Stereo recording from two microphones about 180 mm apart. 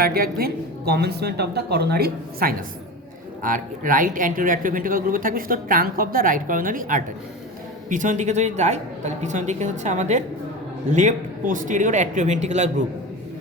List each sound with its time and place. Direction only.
0.0 s a woman's voice: 55° right (ahead or behind); by 12.7 s 40° right (ahead or behind)